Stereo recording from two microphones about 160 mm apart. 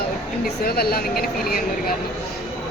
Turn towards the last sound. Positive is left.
turn(degrees=70)  # may be behind; listen again after turning